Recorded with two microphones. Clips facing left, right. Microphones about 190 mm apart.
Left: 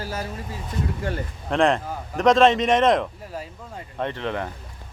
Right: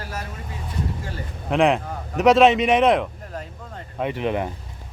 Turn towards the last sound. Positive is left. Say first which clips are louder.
# right 3 dB
turn(degrees=-15)  # may be behind; listen again after turning